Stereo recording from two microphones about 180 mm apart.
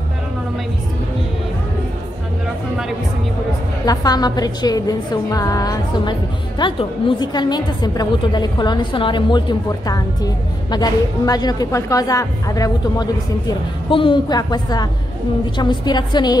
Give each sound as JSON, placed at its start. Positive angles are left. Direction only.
{"t": 3.8, "sound": "a woman's voice", "side_deg": 20}